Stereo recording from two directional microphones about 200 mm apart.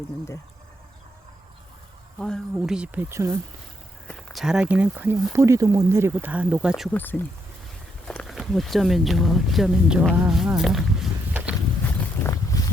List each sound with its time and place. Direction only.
2.1 s speech: 5° left (ahead or behind); by 3.3 s 15° right (ahead or behind)
4.1 s speech: centre (ahead or behind)
6.9 s speech: 10° left (ahead or behind)
12.5 s a sound: 15° left (ahead or behind)